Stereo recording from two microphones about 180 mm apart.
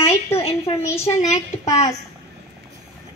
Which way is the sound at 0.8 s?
15° left (ahead or behind).